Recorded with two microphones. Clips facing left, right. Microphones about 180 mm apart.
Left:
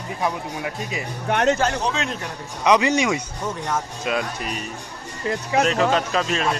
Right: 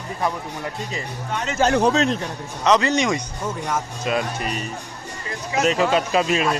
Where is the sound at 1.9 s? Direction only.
40° right (ahead or behind).